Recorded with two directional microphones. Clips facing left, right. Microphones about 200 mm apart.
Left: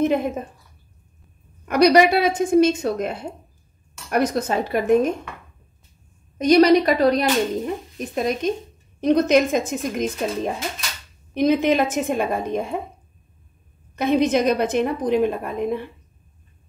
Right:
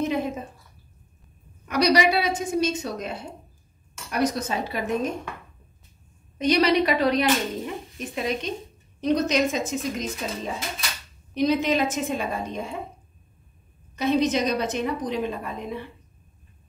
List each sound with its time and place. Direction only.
0.0 s a woman's voice: 55° left (ahead or behind)
1.7 s speech: 55° left (ahead or behind)
4.1 s speech: 55° left (ahead or behind)
6.3 s a woman's voice: 45° left (ahead or behind)
13.9 s a woman's voice: 55° left (ahead or behind)